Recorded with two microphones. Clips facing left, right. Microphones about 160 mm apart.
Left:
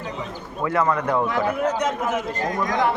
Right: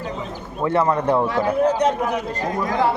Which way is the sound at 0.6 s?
30° right (ahead or behind).